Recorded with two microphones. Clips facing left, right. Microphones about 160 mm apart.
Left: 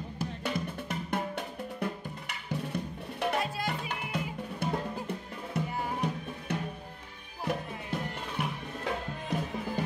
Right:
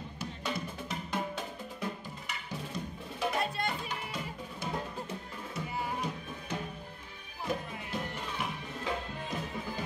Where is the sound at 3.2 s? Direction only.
65° left (ahead or behind).